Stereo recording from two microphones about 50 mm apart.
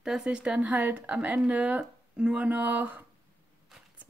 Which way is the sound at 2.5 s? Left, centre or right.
Right.